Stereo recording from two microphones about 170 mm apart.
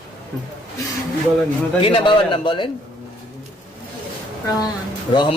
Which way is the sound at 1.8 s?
30° left (ahead or behind).